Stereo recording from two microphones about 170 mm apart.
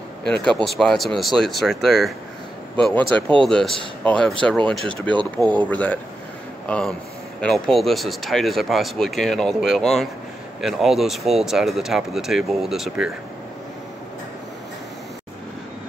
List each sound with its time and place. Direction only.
0.5 s speech: 5° left (ahead or behind)
5.0 s speech: 30° right (ahead or behind)
5.6 s speech: 10° left (ahead or behind)